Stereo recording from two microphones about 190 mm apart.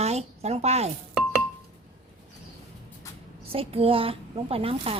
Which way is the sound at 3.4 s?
30° right (ahead or behind).